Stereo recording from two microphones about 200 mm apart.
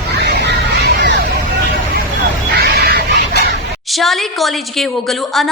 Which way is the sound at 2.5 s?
50° right (ahead or behind).